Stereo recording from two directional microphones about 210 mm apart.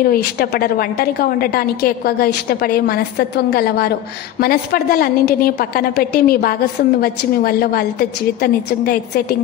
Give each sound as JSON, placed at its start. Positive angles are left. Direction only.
{"t": 0.0, "sound": "a woman's voice", "side_deg": 45}